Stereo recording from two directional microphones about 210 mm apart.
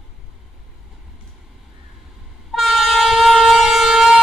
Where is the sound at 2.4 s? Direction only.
Centre (ahead or behind).